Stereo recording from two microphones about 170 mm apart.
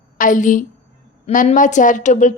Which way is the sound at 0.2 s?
50° left (ahead or behind).